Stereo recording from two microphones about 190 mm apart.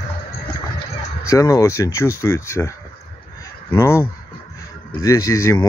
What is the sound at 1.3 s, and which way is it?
Speech, 15° left (ahead or behind).